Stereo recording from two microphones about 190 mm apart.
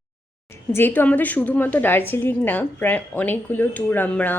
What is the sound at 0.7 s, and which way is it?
A woman's voice, 10° left (ahead or behind).